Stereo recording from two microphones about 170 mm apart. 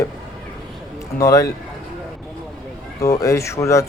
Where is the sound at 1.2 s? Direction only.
20° left (ahead or behind).